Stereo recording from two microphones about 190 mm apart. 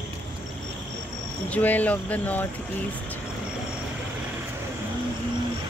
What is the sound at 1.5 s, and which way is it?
Speech, 10° left (ahead or behind).